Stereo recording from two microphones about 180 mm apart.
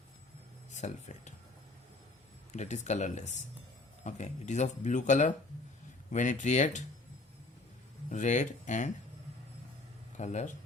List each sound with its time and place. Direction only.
0.7 s speech: 40° left (ahead or behind)
2.5 s speech: 40° left (ahead or behind)
8.1 s speech: 40° left (ahead or behind)
10.2 s speech: 40° left (ahead or behind)